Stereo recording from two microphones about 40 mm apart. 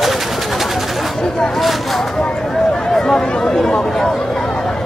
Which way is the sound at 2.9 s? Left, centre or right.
Centre.